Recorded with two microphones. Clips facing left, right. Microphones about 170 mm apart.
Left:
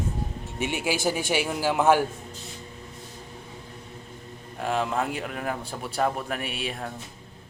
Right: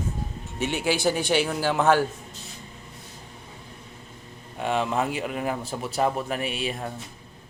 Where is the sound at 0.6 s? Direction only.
10° left (ahead or behind).